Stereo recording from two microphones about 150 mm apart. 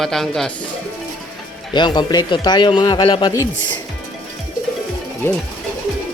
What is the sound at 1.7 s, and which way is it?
Speech, 30° left (ahead or behind).